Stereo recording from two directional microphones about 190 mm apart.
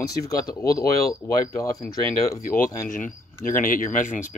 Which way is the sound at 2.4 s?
45° left (ahead or behind).